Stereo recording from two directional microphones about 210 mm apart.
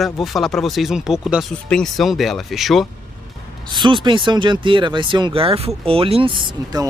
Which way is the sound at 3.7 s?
20° right (ahead or behind).